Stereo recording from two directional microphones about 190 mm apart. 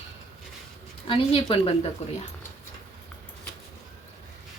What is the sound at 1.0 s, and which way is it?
Speech, 25° left (ahead or behind).